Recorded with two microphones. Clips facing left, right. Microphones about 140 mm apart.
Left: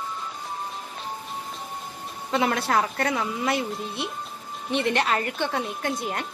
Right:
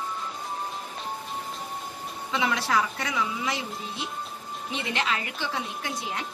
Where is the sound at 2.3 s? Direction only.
50° left (ahead or behind).